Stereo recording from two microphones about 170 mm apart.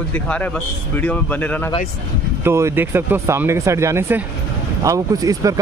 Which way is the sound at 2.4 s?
15° right (ahead or behind).